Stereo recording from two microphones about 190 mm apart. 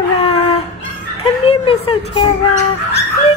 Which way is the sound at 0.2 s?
30° left (ahead or behind).